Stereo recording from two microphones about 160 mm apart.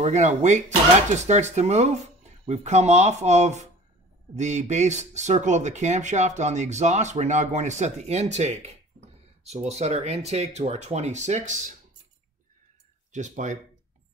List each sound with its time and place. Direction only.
0.0 s speech: 45° right (ahead or behind)
13.1 s speech: 50° right (ahead or behind)